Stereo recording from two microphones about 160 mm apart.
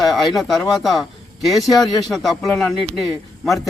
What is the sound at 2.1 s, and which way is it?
Speech, centre (ahead or behind).